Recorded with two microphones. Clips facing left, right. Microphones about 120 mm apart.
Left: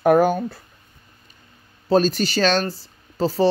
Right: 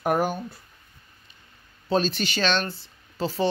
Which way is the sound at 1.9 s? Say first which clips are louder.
Left 6 dB; 40° left (ahead or behind).